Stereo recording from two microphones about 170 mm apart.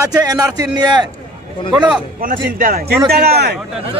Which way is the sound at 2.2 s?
55° right (ahead or behind).